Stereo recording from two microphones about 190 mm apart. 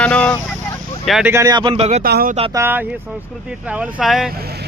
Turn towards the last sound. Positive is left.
turn(degrees=-55)  # may be behind; listen again after turning